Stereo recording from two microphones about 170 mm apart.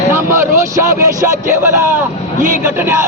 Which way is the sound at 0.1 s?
15° right (ahead or behind).